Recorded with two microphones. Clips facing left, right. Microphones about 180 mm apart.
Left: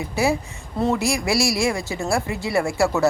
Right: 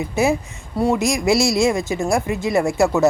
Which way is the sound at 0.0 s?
20° right (ahead or behind).